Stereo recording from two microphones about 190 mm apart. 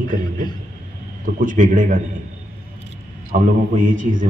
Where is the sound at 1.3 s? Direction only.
45° right (ahead or behind).